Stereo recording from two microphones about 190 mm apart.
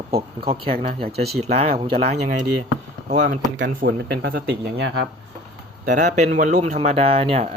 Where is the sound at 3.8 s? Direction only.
60° right (ahead or behind).